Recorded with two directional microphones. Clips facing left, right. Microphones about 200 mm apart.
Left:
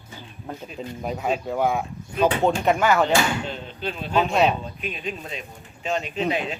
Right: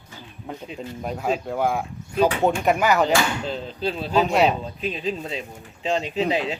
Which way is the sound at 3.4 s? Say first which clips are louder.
Right 4 dB; 35° right (ahead or behind).